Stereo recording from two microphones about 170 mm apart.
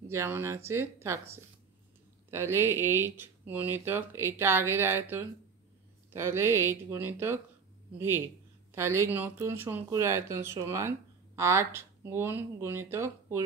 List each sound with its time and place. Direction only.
0.1 s speech: 15° right (ahead or behind)
8.7 s speech: 15° right (ahead or behind)